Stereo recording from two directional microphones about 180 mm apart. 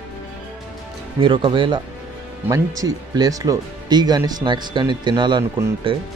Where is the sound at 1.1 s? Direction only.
25° right (ahead or behind).